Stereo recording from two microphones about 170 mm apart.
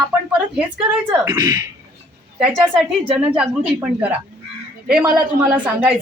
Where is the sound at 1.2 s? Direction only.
20° right (ahead or behind).